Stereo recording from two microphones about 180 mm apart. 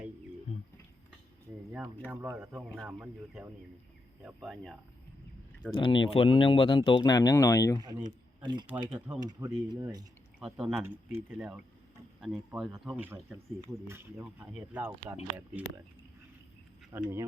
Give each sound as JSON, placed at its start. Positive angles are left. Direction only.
{"t": 2.0, "sound": "speech", "side_deg": -10}
{"t": 5.7, "sound": "speech", "side_deg": 25}
{"t": 8.4, "sound": "speech", "side_deg": -25}
{"t": 8.9, "sound": "speech", "side_deg": -5}
{"t": 10.4, "sound": "speech", "side_deg": -5}
{"t": 16.9, "sound": "speech", "side_deg": -15}